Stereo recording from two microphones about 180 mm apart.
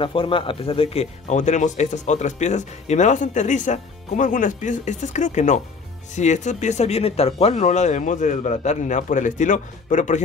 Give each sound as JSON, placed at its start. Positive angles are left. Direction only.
{"t": 0.0, "sound": "speech", "side_deg": 30}